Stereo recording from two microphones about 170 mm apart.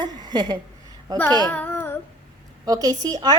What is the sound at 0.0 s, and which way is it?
Speech, 25° right (ahead or behind).